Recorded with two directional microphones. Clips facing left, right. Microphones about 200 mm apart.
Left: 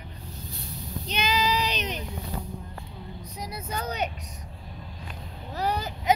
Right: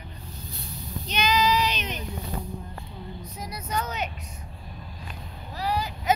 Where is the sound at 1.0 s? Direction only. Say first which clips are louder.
Right 3 dB; 30° left (ahead or behind).